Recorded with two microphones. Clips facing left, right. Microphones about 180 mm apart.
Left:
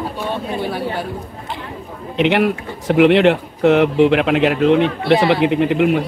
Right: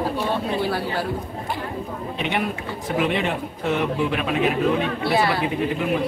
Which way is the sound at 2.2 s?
80° left.